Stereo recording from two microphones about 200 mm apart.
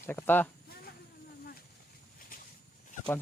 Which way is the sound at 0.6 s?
50° left (ahead or behind).